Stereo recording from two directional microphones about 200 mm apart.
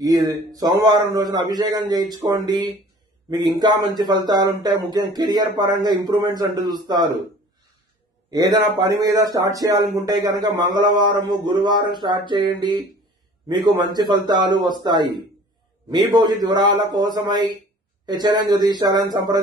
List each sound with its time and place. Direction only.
0.0 s speech: 20° right (ahead or behind)
8.3 s speech: 20° right (ahead or behind)